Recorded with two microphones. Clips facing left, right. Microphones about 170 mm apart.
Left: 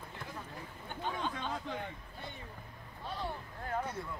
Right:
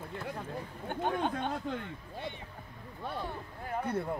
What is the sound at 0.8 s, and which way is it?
Chatter, 55° right (ahead or behind).